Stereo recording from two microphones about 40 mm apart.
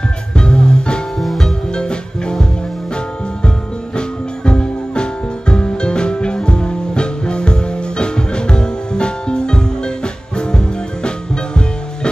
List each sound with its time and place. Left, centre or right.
0.4 s music: left
1.2 s music: centre
1.7 s music: left
4.5 s music: left